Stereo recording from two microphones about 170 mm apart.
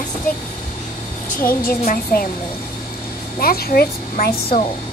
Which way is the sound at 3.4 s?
60° left (ahead or behind).